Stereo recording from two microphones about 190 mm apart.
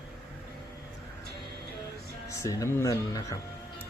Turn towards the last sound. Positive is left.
turn(degrees=15)  # may be behind; listen again after turning